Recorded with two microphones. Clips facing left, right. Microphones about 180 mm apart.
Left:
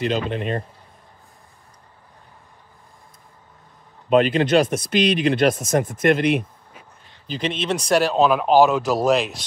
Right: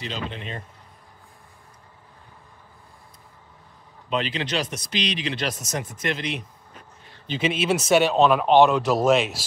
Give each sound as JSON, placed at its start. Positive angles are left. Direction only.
{"t": 0.0, "sound": "speech", "side_deg": 55}
{"t": 4.1, "sound": "speech", "side_deg": 50}
{"t": 6.7, "sound": "a sound", "side_deg": 5}
{"t": 7.3, "sound": "speech", "side_deg": -5}